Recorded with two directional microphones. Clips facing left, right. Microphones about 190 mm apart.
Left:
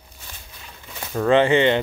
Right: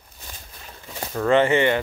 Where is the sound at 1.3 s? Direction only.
15° left (ahead or behind).